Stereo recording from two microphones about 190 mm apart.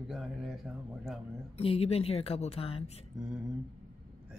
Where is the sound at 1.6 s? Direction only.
30° left (ahead or behind).